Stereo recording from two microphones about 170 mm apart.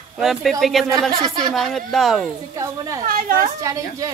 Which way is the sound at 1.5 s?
Centre (ahead or behind).